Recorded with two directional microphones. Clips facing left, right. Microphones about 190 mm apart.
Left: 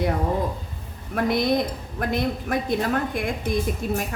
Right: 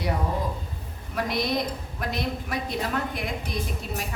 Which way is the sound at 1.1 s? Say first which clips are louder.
Left 5 dB; 50° left (ahead or behind).